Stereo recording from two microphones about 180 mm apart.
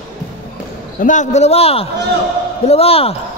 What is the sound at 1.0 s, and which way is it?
A man's voice, 45° left (ahead or behind).